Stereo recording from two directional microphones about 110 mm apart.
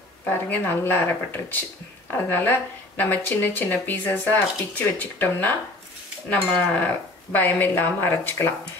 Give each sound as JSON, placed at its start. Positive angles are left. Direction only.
{"t": 0.2, "sound": "speech", "side_deg": 15}